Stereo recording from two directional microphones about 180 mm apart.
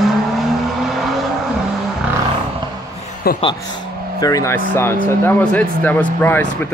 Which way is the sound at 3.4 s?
20° left (ahead or behind).